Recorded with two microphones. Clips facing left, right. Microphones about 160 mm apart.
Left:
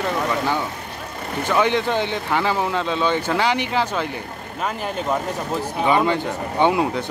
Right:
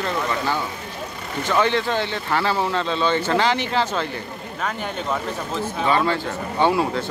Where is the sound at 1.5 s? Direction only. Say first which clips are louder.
Left 1 dB; 15° left (ahead or behind).